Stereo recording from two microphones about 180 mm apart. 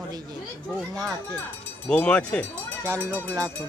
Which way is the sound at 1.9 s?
5° left (ahead or behind).